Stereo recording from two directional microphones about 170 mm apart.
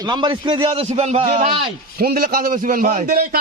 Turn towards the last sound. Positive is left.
turn(degrees=-60)  # may be behind; listen again after turning